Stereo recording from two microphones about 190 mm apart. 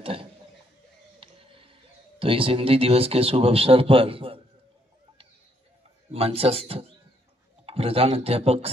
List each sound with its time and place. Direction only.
0.0 s a sound: 30° right (ahead or behind)
1.2 s music: 30° right (ahead or behind)
2.1 s speech: 30° right (ahead or behind)
6.1 s speech: 30° right (ahead or behind)